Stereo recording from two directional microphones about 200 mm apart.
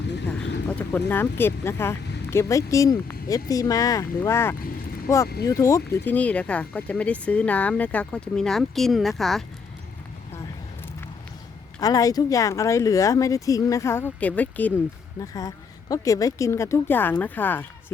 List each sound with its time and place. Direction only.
0.8 s speech: 10° left (ahead or behind)
11.8 s speech: 15° left (ahead or behind)